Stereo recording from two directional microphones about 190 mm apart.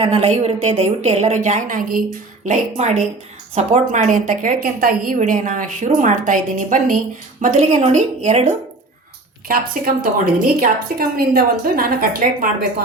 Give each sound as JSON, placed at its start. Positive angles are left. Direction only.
{"t": 0.0, "sound": "a woman's voice", "side_deg": -30}
{"t": 9.5, "sound": "a woman's voice", "side_deg": -50}